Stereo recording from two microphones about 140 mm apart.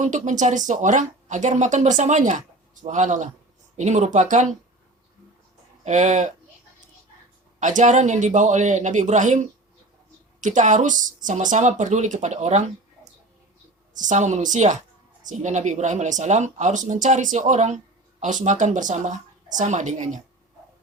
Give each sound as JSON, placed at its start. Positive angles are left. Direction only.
{"t": 0.0, "sound": "speech", "side_deg": -60}
{"t": 5.8, "sound": "speech", "side_deg": -60}
{"t": 7.6, "sound": "speech", "side_deg": -60}
{"t": 13.9, "sound": "speech", "side_deg": -65}